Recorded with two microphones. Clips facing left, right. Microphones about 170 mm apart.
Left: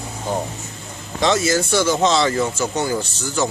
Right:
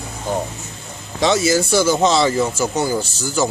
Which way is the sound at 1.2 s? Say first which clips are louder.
Right 2 dB; 5° right (ahead or behind).